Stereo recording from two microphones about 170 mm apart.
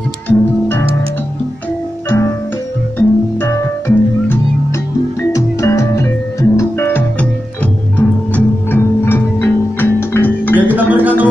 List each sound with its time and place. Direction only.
0.3 s music: 10° left (ahead or behind)
2.0 s music: 15° left (ahead or behind)
10.5 s music: 10° right (ahead or behind)